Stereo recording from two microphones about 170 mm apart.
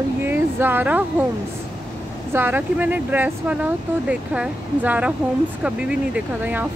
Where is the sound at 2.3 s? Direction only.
10° right (ahead or behind).